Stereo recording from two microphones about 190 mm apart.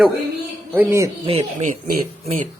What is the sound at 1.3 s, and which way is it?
Speech, 35° right (ahead or behind).